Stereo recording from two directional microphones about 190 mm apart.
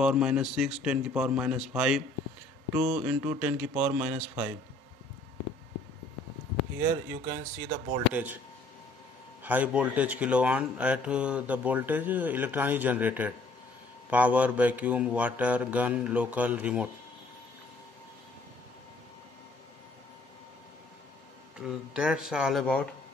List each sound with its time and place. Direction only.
0.0 s speech: 5° right (ahead or behind)
6.8 s speech: 15° right (ahead or behind)
9.4 s speech: 10° right (ahead or behind)
21.5 s speech: 5° right (ahead or behind)